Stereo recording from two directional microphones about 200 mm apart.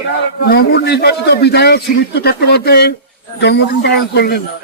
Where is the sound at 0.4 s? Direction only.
50° left (ahead or behind).